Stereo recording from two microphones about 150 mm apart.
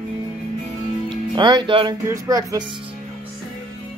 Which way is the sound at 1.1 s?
30° right (ahead or behind).